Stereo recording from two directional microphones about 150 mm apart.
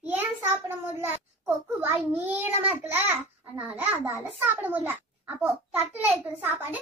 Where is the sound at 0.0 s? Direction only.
10° right (ahead or behind).